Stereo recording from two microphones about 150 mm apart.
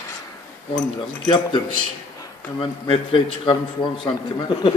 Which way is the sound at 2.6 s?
35° left (ahead or behind).